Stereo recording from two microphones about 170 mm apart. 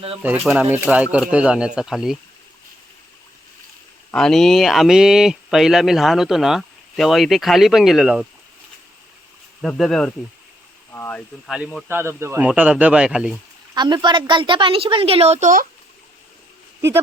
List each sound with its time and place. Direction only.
0.4 s speech: 10° right (ahead or behind)
4.1 s speech: 5° left (ahead or behind)
9.6 s speech: 5° left (ahead or behind)
11.4 s speech: centre (ahead or behind)
11.9 s speech: 15° right (ahead or behind)
12.5 s speech: 5° right (ahead or behind)
13.7 s a woman's voice: 25° right (ahead or behind); by 15.6 s 45° right (ahead or behind)